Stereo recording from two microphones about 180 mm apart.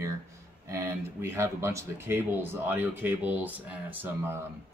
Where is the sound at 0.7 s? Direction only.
15° right (ahead or behind).